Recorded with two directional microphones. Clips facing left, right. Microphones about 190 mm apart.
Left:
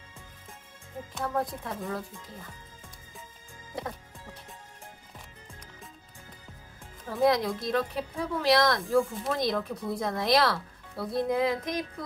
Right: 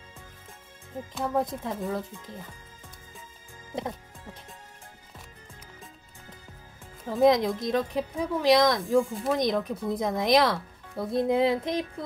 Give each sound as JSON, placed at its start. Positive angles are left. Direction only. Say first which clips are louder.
{"t": 1.2, "sound": "speech", "louder": "right 3 dB", "side_deg": -20}
{"t": 3.7, "sound": "speech", "louder": "right 3 dB", "side_deg": -20}
{"t": 7.1, "sound": "speech", "louder": "right 4 dB", "side_deg": -20}